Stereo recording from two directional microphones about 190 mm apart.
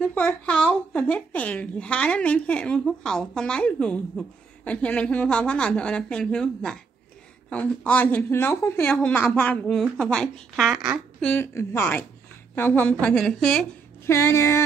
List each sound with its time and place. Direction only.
0.0 s a woman's voice: 10° left (ahead or behind)
11.2 s a woman's voice: 10° left (ahead or behind)
14.0 s a woman's voice: 15° left (ahead or behind)